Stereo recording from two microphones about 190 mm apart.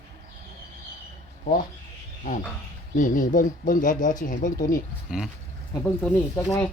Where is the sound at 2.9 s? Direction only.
45° left (ahead or behind).